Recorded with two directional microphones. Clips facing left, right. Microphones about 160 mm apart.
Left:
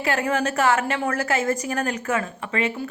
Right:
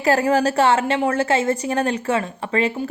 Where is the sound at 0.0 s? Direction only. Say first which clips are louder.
Right 6 dB; 35° right (ahead or behind).